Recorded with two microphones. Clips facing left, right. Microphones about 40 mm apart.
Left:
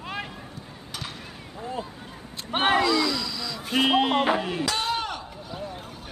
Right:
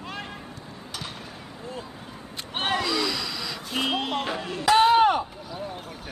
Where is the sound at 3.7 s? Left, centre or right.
Left.